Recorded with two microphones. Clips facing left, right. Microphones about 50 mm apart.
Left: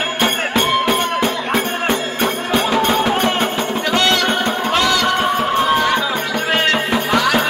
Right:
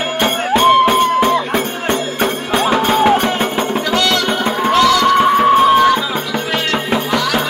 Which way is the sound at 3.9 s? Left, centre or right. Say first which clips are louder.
Left 1 dB; left.